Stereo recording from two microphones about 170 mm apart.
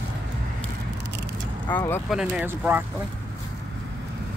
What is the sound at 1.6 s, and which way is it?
Speech, 10° left (ahead or behind).